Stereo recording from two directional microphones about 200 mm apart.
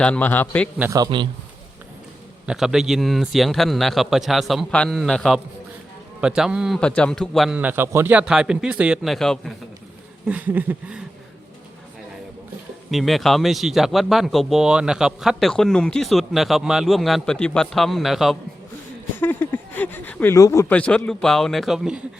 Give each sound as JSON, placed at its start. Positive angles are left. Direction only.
{"t": 0.0, "sound": "speech", "side_deg": 5}
{"t": 0.8, "sound": "a man's voice", "side_deg": -15}
{"t": 2.5, "sound": "speech", "side_deg": 0}
{"t": 10.2, "sound": "a sound", "side_deg": -10}
{"t": 12.9, "sound": "speech", "side_deg": 0}
{"t": 19.2, "sound": "speech", "side_deg": 10}